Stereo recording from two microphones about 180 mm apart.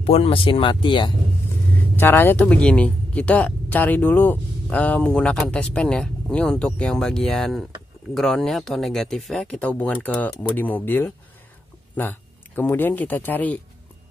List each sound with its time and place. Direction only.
0.0 s speech: 35° left (ahead or behind)
2.0 s speech: 10° left (ahead or behind)